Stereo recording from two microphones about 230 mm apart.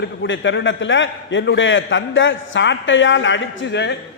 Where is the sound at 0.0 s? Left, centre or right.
Left.